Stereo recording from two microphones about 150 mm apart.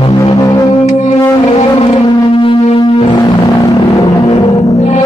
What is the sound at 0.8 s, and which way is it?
Music, 50° left (ahead or behind).